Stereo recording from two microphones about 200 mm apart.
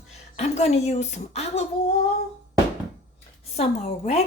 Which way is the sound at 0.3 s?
30° left (ahead or behind).